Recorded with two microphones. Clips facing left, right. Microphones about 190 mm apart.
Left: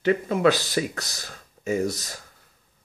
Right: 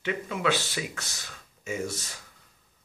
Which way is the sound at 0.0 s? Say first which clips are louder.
Left 9 dB; 40° left (ahead or behind).